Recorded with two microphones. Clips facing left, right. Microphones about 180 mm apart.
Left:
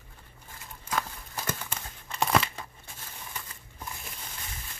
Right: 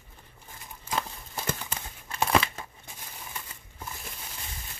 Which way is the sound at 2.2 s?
Centre (ahead or behind).